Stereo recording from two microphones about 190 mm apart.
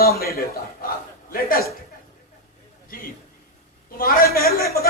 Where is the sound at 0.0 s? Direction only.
55° left (ahead or behind).